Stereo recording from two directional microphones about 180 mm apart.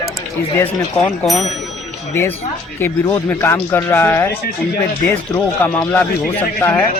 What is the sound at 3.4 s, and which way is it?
Speech, 15° left (ahead or behind).